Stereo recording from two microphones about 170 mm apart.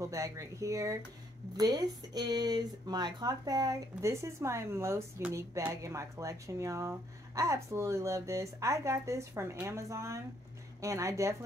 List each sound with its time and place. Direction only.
0.0 s speech: 20° right (ahead or behind)